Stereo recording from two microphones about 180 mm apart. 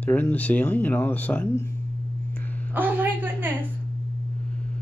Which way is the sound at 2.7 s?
10° right (ahead or behind).